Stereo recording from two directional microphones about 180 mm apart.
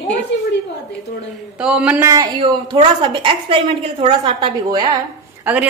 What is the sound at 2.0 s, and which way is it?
A woman's voice, 25° right (ahead or behind).